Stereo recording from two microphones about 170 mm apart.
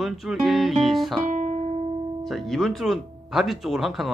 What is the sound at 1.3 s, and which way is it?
Guitar, 45° right (ahead or behind).